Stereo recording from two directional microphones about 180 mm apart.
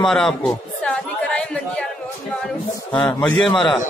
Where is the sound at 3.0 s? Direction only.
5° left (ahead or behind).